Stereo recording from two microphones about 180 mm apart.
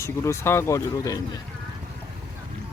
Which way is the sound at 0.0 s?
15° left (ahead or behind).